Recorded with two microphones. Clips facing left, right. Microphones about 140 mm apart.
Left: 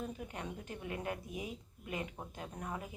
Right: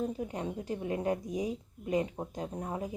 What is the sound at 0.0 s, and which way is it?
A woman's voice, 30° right (ahead or behind).